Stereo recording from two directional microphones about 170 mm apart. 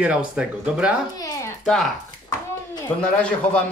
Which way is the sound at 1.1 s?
20° left (ahead or behind).